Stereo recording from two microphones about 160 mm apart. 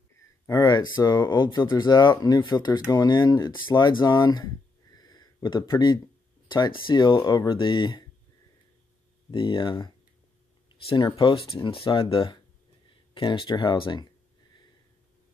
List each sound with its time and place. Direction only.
0.5 s speech: 25° left (ahead or behind)
4.9 s a sound: 25° left (ahead or behind)
6.5 s speech: 25° left (ahead or behind)
9.3 s speech: 30° left (ahead or behind)
10.7 s a sound: 30° left (ahead or behind)
11.1 s speech: 35° left (ahead or behind)